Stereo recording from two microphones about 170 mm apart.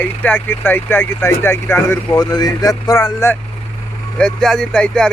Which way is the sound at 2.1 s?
25° left (ahead or behind).